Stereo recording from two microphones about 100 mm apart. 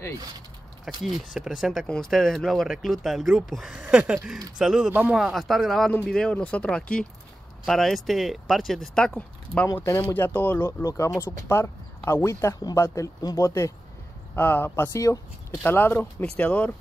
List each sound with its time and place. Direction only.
0.8 s speech: 5° right (ahead or behind)
3.8 s a sound: 10° right (ahead or behind)
4.6 s speech: 5° right (ahead or behind)
10.0 s speech: 20° left (ahead or behind)
14.3 s speech: 20° left (ahead or behind)